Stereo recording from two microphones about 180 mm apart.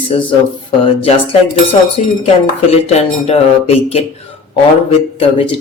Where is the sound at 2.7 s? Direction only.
35° left (ahead or behind).